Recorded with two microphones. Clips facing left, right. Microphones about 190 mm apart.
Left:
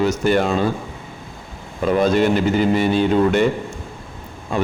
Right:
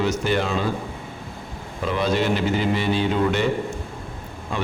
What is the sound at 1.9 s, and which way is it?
A man's voice, 45° left (ahead or behind).